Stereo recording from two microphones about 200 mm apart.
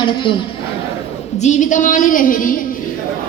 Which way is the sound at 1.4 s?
35° left (ahead or behind).